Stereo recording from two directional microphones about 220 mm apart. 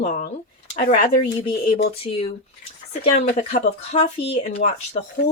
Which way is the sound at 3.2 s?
30° left (ahead or behind).